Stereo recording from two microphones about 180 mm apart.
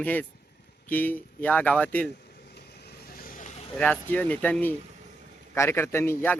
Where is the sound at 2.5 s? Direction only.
65° left (ahead or behind); by 3.6 s 45° left (ahead or behind).